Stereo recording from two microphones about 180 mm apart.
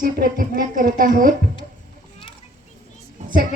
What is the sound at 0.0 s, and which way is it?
A woman's voice, 50° right (ahead or behind).